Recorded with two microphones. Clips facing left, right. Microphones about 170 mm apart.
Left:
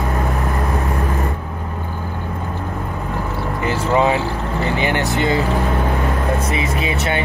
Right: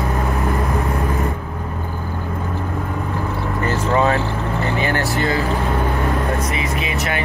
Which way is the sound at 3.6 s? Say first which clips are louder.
Left 1 dB; 15° left (ahead or behind).